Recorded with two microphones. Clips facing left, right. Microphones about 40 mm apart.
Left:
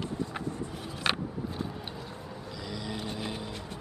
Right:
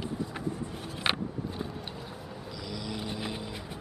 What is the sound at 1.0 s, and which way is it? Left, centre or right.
Vehicle, centre.